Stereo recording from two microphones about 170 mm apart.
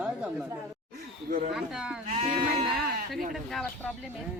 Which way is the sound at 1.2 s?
55° right (ahead or behind).